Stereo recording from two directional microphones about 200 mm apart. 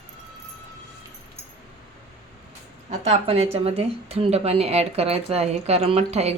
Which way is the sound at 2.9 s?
35° right (ahead or behind).